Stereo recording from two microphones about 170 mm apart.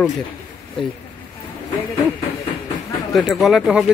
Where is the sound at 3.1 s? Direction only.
Centre (ahead or behind).